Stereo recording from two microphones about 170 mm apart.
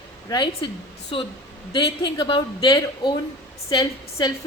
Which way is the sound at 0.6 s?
30° left (ahead or behind).